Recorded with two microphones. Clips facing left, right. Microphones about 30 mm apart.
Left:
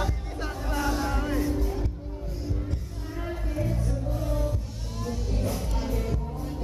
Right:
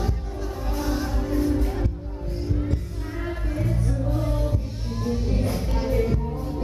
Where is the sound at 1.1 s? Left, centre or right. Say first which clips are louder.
Right 2 dB; left.